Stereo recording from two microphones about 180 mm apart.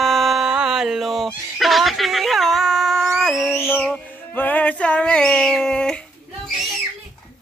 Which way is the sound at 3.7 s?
10° left (ahead or behind).